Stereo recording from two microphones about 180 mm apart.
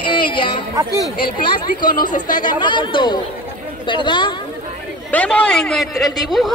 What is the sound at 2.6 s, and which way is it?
Speech, 25° left (ahead or behind).